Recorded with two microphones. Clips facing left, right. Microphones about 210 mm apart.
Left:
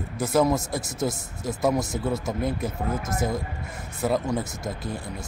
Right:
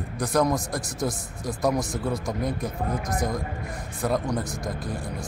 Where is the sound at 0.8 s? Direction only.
25° left (ahead or behind).